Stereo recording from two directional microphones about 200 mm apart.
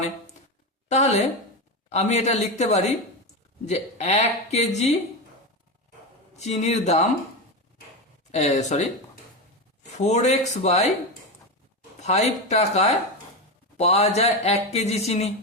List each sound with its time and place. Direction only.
0.9 s a man's voice: 35° left (ahead or behind)
6.3 s a man's voice: 35° left (ahead or behind)
8.3 s a man's voice: 35° left (ahead or behind)
10.0 s a man's voice: 35° left (ahead or behind)
12.0 s a man's voice: 35° left (ahead or behind)